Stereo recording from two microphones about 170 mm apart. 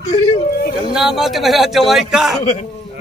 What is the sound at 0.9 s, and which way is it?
Speech, centre (ahead or behind).